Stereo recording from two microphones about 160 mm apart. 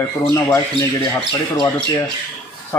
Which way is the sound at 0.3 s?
20° left (ahead or behind).